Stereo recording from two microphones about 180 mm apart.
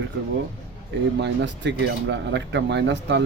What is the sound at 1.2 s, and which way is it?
Speech, 80° right.